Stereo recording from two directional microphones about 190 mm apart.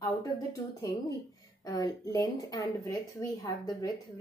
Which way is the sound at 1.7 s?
20° left (ahead or behind).